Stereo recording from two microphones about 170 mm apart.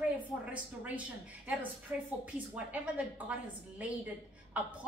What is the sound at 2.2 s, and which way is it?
A woman's voice, 10° right (ahead or behind).